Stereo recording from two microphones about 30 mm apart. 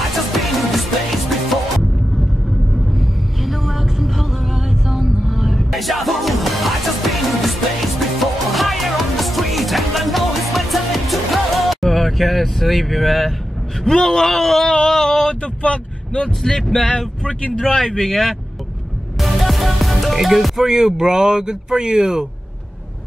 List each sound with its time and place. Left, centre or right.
0.0 s music: centre
3.0 s vehicle: centre
8.1 s music: centre
13.8 s speech: centre
14.9 s a sound: centre
15.4 s vehicle: left
16.8 s speech: left
17.3 s speech: left
18.0 s speech: centre
19.1 s music: centre
20.7 s speech: right